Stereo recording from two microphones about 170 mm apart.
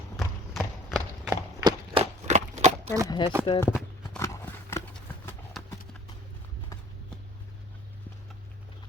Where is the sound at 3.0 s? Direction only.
25° left (ahead or behind).